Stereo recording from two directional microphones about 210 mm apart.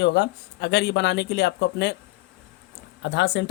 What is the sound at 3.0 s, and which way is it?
Speech, 55° left (ahead or behind).